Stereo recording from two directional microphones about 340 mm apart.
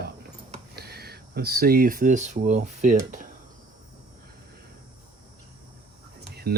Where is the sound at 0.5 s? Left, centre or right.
Right.